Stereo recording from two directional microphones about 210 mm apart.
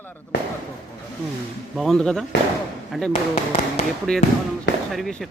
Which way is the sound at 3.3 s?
35° left (ahead or behind).